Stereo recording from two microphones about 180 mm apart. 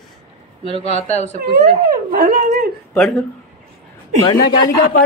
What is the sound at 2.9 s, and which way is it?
Speech, 5° left (ahead or behind).